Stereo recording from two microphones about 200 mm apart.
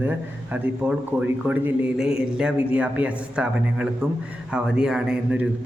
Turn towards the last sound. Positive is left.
turn(degrees=-5)  # may be behind; listen again after turning